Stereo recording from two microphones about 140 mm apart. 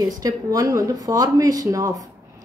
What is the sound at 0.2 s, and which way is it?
A woman's voice, 25° right (ahead or behind).